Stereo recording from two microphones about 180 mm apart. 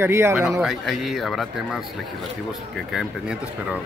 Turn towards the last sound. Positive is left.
turn(degrees=-5)  # may be behind; listen again after turning